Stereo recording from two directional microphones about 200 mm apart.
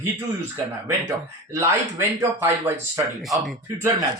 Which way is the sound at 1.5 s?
15° right (ahead or behind).